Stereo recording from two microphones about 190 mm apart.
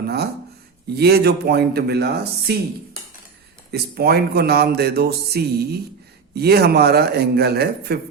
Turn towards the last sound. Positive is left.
turn(degrees=-60)  # may be behind; listen again after turning